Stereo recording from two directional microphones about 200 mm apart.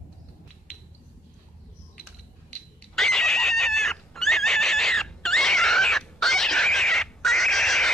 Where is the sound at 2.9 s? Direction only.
Centre (ahead or behind).